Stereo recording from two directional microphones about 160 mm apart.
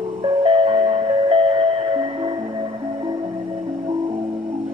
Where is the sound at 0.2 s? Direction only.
30° right (ahead or behind).